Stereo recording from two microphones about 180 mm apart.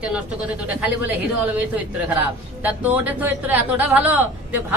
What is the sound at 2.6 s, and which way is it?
A man's voice, 10° right (ahead or behind).